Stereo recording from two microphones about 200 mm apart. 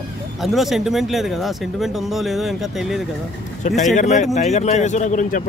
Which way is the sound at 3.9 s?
35° left (ahead or behind).